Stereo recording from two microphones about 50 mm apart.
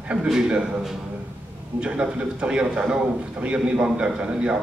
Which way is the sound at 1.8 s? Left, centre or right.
Centre.